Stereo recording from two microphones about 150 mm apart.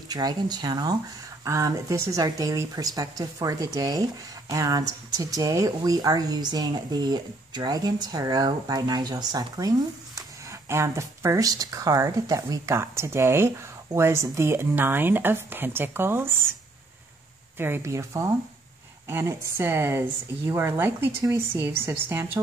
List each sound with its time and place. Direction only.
0.1 s speech: 25° right (ahead or behind)
17.6 s speech: 15° right (ahead or behind)